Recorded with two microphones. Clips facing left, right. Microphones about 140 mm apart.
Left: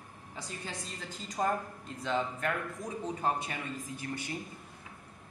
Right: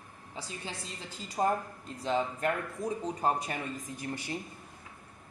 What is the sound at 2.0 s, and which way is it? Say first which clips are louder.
Speech: right 2 dB; 35° right (ahead or behind).